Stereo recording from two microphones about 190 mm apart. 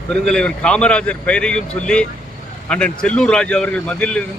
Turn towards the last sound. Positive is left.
turn(degrees=5)  # may be behind; listen again after turning